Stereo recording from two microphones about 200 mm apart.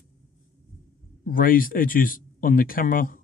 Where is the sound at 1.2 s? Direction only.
45° left (ahead or behind).